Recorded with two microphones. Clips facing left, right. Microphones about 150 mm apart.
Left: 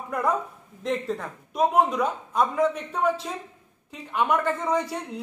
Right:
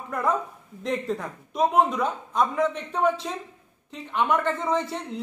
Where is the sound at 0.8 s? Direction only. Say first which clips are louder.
Even; centre (ahead or behind).